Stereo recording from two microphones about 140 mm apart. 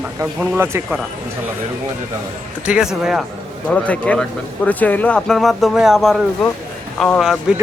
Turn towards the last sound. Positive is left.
turn(degrees=-5)  # may be behind; listen again after turning